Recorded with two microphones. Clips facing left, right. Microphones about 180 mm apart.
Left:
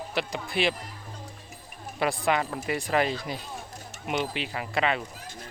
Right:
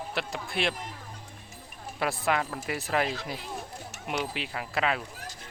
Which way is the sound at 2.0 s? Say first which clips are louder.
Left 2 dB; centre (ahead or behind).